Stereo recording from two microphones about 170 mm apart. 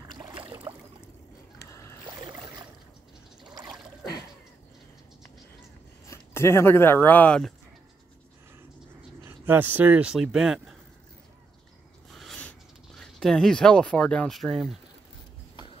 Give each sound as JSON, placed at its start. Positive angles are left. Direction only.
{"t": 0.7, "sound": "boat", "side_deg": -25}
{"t": 1.7, "sound": "rowboat", "side_deg": 15}
{"t": 6.0, "sound": "speech", "side_deg": 15}
{"t": 9.2, "sound": "speech", "side_deg": -15}
{"t": 12.1, "sound": "a sound", "side_deg": 0}